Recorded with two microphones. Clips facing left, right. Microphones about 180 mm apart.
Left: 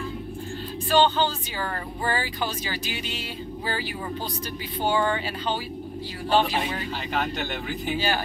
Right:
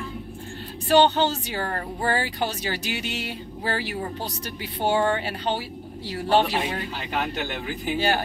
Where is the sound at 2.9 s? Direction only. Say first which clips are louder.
Right 2 dB; 70° right (ahead or behind).